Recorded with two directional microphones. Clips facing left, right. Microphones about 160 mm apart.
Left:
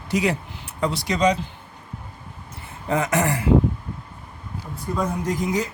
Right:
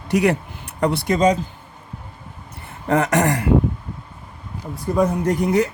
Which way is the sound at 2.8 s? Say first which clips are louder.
Right 4 dB; 65° right (ahead or behind).